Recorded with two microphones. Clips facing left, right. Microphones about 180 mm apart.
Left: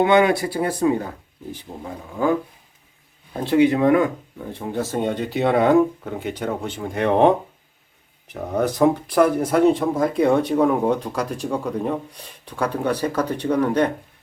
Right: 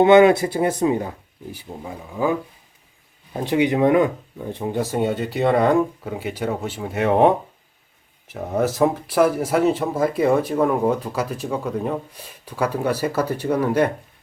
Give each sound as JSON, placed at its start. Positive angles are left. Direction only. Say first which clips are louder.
{"t": 0.0, "sound": "speech", "louder": "right 4 dB", "side_deg": -25}
{"t": 1.5, "sound": "speech", "louder": "right 1 dB", "side_deg": -5}
{"t": 3.4, "sound": "speech", "louder": "left 2 dB", "side_deg": -15}